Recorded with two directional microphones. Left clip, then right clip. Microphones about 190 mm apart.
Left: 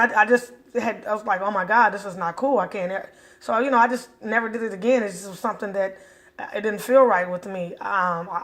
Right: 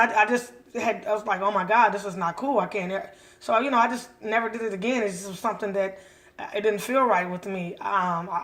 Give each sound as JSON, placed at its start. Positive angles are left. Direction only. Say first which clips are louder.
{"t": 0.0, "sound": "a man's voice", "louder": "left 3 dB", "side_deg": 20}